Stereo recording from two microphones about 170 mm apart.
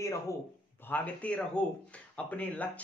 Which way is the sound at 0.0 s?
15° left (ahead or behind).